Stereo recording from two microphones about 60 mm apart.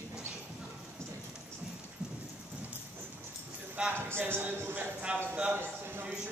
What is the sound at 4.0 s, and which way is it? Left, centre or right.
Speech, right.